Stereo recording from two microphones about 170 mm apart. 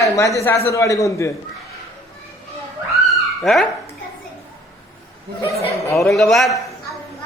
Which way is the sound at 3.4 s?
Centre (ahead or behind).